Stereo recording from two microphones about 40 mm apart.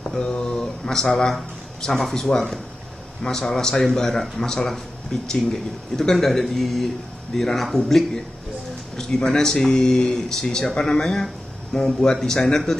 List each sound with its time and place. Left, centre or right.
0.2 s speech: centre